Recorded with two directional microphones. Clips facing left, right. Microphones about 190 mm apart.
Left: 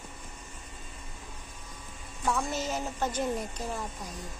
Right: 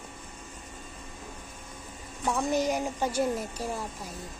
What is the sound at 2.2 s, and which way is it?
A woman's voice, 15° right (ahead or behind).